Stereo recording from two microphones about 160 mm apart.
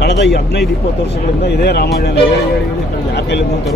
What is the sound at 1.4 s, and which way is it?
Speech, 90° left.